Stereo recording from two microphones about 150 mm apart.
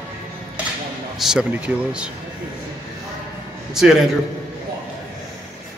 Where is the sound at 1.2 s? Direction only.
5° right (ahead or behind).